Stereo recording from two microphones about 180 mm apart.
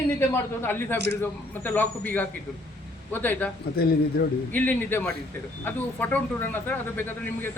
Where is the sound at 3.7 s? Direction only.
60° left (ahead or behind).